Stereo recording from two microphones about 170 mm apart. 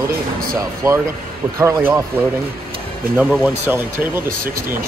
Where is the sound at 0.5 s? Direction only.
20° right (ahead or behind).